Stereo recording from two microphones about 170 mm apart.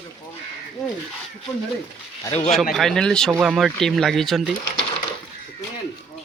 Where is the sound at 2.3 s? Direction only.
40° left (ahead or behind).